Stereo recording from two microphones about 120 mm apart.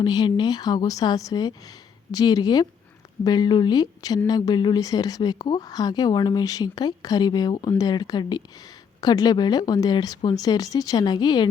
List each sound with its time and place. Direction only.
0.0 s speech: 35° left (ahead or behind)